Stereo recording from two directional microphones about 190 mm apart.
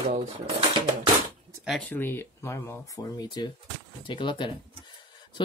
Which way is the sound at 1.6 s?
Centre (ahead or behind).